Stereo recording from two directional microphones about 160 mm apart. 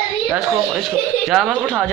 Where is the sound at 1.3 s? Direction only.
5° left (ahead or behind).